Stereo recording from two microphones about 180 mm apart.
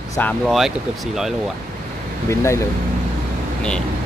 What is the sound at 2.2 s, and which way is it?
Speech, 15° left (ahead or behind).